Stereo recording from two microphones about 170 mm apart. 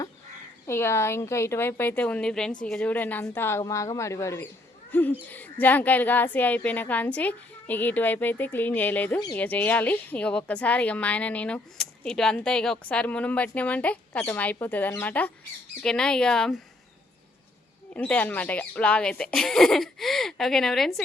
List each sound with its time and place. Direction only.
0.7 s a woman's voice: 15° left (ahead or behind)
4.9 s owl: 10° left (ahead or behind)
5.3 s a woman's voice: 10° left (ahead or behind)
17.9 s speech: 10° left (ahead or behind)